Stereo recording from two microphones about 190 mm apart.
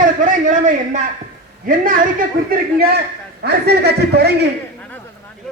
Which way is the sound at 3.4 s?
60° right (ahead or behind).